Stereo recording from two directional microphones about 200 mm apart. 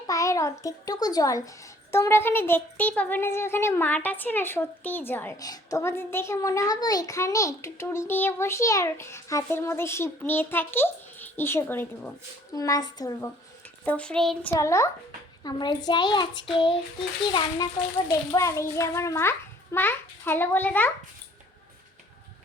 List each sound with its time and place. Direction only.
0.1 s a child's voice: 15° left (ahead or behind)
13.8 s a child's voice: 5° left (ahead or behind)
14.5 s a woman's voice: 15° left (ahead or behind)